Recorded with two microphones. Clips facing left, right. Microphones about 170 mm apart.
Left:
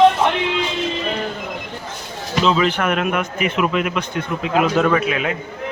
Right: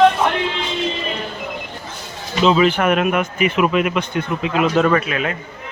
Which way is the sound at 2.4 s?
10° right (ahead or behind).